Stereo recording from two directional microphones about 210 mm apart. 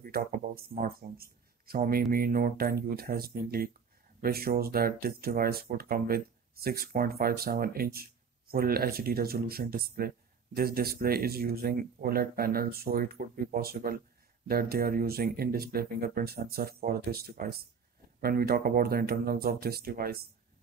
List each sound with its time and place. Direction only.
0.0 s speech: 45° right (ahead or behind)